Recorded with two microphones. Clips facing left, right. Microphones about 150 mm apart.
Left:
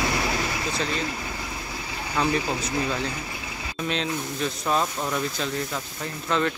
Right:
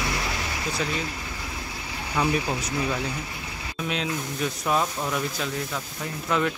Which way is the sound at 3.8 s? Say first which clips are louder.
Left 1 dB; 5° right (ahead or behind).